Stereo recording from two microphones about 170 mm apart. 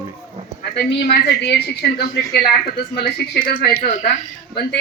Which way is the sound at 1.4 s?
75° left (ahead or behind).